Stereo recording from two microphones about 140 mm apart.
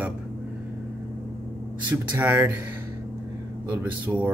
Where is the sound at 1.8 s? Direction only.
10° right (ahead or behind).